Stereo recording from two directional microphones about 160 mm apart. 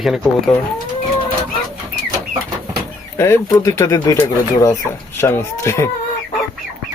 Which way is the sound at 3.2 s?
15° left (ahead or behind).